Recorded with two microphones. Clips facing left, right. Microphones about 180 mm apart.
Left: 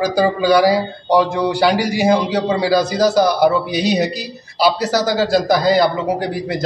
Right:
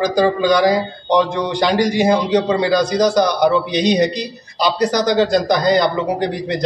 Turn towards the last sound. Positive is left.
turn(degrees=5)  # may be behind; listen again after turning